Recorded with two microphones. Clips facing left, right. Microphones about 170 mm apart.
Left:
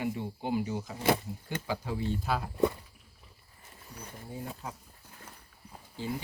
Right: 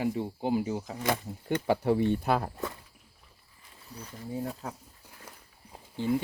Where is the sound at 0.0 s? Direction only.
40° right (ahead or behind).